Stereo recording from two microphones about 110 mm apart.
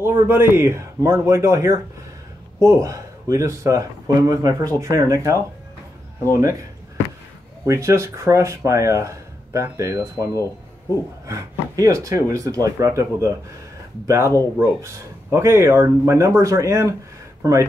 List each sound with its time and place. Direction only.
0.0 s speech: 20° right (ahead or behind)
7.6 s speech: 25° right (ahead or behind)
15.3 s speech: 25° right (ahead or behind)